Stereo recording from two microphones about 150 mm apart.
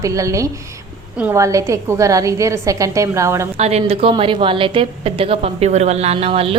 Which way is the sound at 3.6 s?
45° right (ahead or behind).